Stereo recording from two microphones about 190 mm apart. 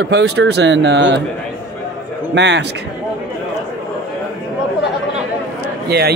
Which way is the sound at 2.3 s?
65° right (ahead or behind).